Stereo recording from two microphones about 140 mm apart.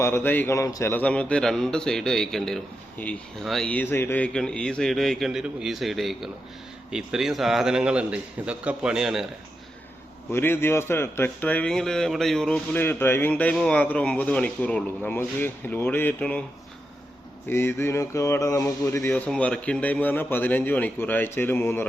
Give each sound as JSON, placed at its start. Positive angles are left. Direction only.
{"t": 0.0, "sound": "a man's voice", "side_deg": 15}
{"t": 10.3, "sound": "a man's voice", "side_deg": 15}
{"t": 17.5, "sound": "speech", "side_deg": 15}
{"t": 19.1, "sound": "a man's voice", "side_deg": 10}